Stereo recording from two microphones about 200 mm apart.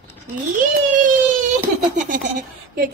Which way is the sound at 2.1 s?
45° right (ahead or behind).